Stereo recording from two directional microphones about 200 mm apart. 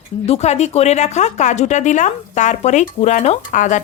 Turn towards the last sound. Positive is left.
turn(degrees=40)  # may be behind; listen again after turning